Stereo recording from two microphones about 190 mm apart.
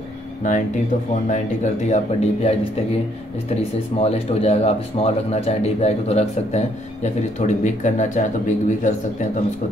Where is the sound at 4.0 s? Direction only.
35° left (ahead or behind).